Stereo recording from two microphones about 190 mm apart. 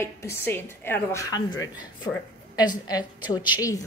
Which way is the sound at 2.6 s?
20° left (ahead or behind).